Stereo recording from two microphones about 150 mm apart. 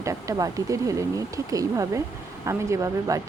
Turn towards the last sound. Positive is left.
turn(degrees=-20)  # may be behind; listen again after turning